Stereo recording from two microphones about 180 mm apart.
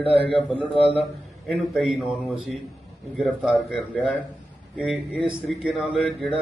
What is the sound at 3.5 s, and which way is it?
Speech, 5° left (ahead or behind).